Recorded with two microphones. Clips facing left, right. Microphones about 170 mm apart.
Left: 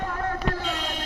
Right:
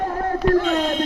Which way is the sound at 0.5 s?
50° right (ahead or behind).